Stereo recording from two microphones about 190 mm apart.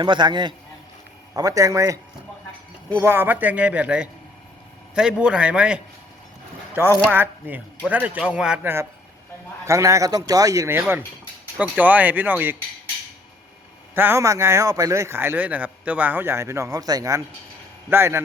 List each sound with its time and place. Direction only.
0.0 s a man's voice: 25° right (ahead or behind); by 5.8 s 5° right (ahead or behind)
7.1 s a man's voice: 10° right (ahead or behind)
13.9 s a man's voice: 10° right (ahead or behind)